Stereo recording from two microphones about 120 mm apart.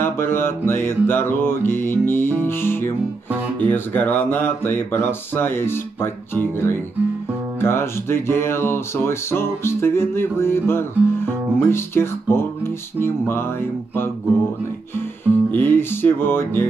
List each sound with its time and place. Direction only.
0.0 s a sound: 20° left (ahead or behind)
7.6 s music: 20° left (ahead or behind)
15.0 s music: 15° left (ahead or behind)